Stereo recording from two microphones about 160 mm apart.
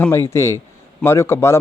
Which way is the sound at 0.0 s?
15° left (ahead or behind).